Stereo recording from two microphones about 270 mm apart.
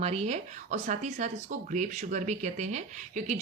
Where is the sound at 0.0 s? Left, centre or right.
Right.